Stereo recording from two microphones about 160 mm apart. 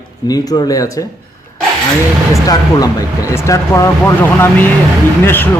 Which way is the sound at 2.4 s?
20° left (ahead or behind).